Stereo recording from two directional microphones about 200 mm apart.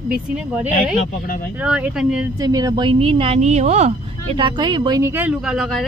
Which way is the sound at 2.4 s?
20° right (ahead or behind).